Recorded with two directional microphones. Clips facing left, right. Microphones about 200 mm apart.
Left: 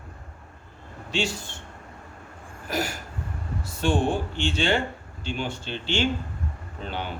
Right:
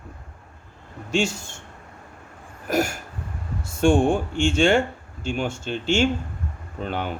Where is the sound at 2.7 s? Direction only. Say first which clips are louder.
Right 6 dB; 45° right (ahead or behind).